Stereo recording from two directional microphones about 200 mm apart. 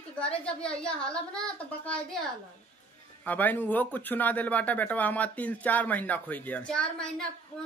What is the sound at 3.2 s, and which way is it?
A man's voice, 10° left (ahead or behind).